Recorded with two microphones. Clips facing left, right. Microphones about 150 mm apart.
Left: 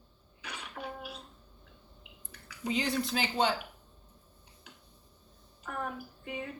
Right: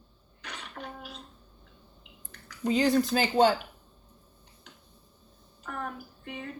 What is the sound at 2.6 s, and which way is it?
Speech, 40° right (ahead or behind).